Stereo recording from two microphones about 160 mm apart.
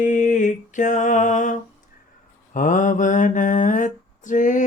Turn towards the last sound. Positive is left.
turn(degrees=55)  # may be behind; listen again after turning